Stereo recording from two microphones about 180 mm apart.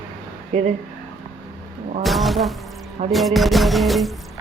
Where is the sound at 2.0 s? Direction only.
Centre (ahead or behind).